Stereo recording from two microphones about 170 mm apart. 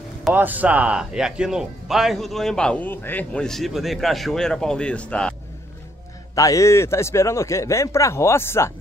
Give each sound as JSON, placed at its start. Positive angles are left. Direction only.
{"t": 0.3, "sound": "speech", "side_deg": -10}
{"t": 6.3, "sound": "speech", "side_deg": 20}